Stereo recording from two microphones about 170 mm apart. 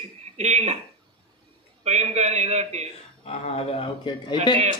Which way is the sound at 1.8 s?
40° right (ahead or behind).